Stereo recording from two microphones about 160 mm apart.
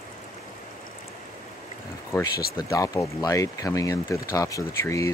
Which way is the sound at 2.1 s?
20° left (ahead or behind).